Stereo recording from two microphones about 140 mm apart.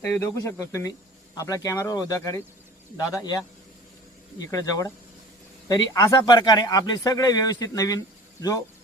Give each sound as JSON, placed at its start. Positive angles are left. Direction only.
{"t": 0.0, "sound": "speech", "side_deg": 20}